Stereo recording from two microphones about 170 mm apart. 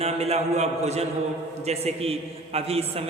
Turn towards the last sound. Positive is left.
turn(degrees=-35)  # may be behind; listen again after turning